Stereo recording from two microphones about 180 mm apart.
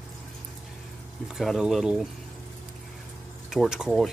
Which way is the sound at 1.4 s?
Centre (ahead or behind).